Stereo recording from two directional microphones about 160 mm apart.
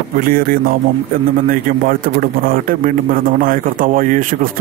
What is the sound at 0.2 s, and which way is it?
A man's voice, 65° right (ahead or behind).